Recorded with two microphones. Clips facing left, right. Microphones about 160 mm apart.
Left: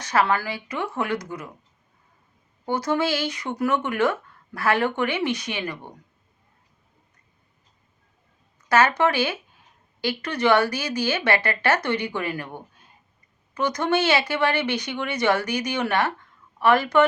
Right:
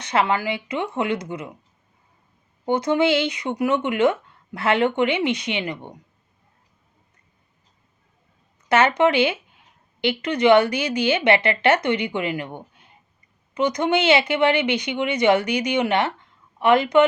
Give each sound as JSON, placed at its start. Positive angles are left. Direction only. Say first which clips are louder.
{"t": 0.0, "sound": "speech", "louder": "right 1 dB", "side_deg": -20}
{"t": 2.6, "sound": "speech", "louder": "right 4 dB", "side_deg": -20}
{"t": 8.7, "sound": "speech", "louder": "right 2 dB", "side_deg": -20}